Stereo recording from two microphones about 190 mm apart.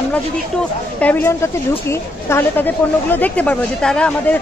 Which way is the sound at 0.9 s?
5° left (ahead or behind).